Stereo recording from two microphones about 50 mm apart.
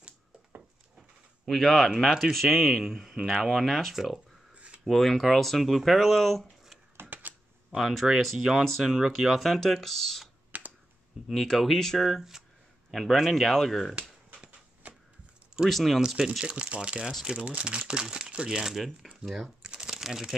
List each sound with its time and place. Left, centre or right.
0.9 s a sound: centre
2.0 s speech: centre
7.1 s a sound: right
7.7 s speech: centre
10.5 s finger snapping: right
11.2 s speech: centre
12.9 s speech: centre
14.4 s a sound: right
15.7 s speech: centre
16.3 s speech: centre
17.0 s speech: centre
17.5 s speech: right; by 19.5 s centre
19.6 s crumpling: centre